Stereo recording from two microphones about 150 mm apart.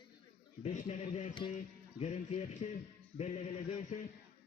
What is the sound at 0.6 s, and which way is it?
Speech, 50° left (ahead or behind).